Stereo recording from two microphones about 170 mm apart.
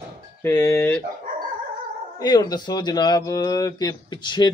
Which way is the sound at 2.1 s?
25° left (ahead or behind).